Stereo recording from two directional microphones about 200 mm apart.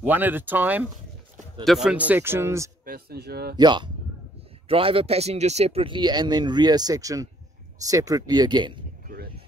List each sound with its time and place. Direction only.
0.0 s speech: 10° right (ahead or behind)
2.8 s speech: 50° right (ahead or behind)
3.5 s speech: 20° right (ahead or behind)
9.0 s a sound: 50° right (ahead or behind)